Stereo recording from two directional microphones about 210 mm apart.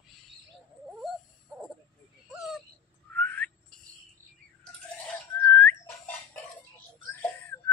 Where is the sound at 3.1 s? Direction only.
5° left (ahead or behind).